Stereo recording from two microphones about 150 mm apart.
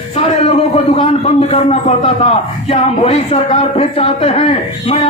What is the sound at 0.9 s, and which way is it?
A man's voice, 45° left (ahead or behind).